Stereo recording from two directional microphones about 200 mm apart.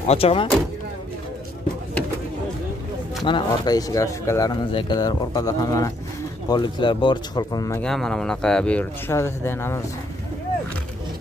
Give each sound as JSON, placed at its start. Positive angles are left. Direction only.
{"t": 0.0, "sound": "speech", "side_deg": 30}
{"t": 3.3, "sound": "speech", "side_deg": 20}
{"t": 7.8, "sound": "speech", "side_deg": 5}